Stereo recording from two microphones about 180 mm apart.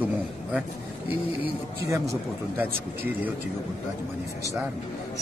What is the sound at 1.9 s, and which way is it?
Speech, 15° right (ahead or behind).